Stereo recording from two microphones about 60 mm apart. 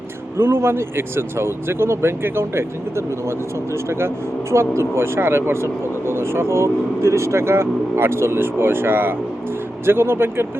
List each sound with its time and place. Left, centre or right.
0.3 s speech: right
4.5 s speech: right